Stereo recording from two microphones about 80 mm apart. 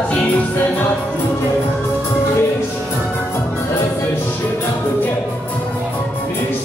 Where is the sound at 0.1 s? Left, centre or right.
Centre.